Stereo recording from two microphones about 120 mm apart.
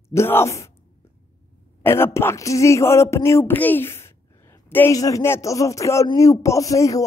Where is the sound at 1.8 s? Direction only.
20° left (ahead or behind).